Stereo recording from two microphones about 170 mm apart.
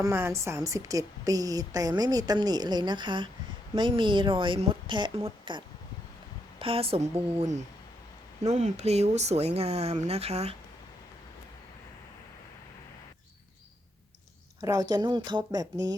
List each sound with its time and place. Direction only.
0.0 s a woman's voice: 15° right (ahead or behind); by 7.1 s 35° right (ahead or behind)
8.4 s speech: 40° right (ahead or behind)
14.6 s a woman's voice: 20° right (ahead or behind)